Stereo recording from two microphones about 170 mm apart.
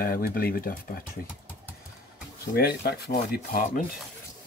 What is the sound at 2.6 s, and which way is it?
Speech, 70° left (ahead or behind).